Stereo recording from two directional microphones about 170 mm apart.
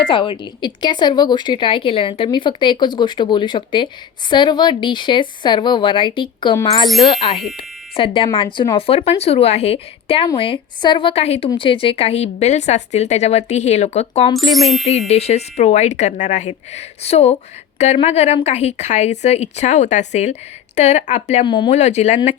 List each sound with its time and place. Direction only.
0.1 s a woman's voice: 30° left (ahead or behind)
14.3 s speech: centre (ahead or behind)
15.0 s a woman's voice: 40° left (ahead or behind)
21.4 s speech: 30° left (ahead or behind)
21.8 s speech: 40° left (ahead or behind)